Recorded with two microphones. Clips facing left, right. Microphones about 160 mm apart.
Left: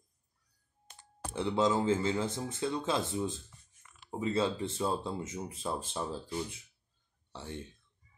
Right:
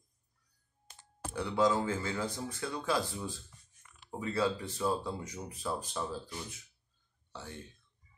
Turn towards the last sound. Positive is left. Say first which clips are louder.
# left 1 dB
turn(degrees=25)  # may be behind; listen again after turning